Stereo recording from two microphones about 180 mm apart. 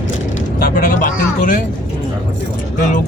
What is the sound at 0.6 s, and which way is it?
Speech, 55° left (ahead or behind).